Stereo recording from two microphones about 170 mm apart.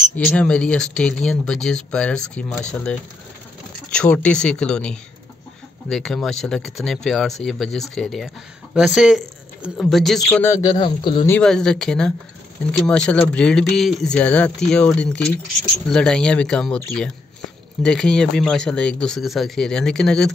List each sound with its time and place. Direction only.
0.1 s speech: 5° left (ahead or behind)
10.7 s speech: 25° left (ahead or behind)
11.2 s speech: 5° left (ahead or behind)
17.8 s speech: 5° left (ahead or behind)